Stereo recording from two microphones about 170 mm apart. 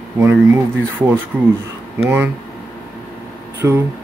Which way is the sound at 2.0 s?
10° right (ahead or behind).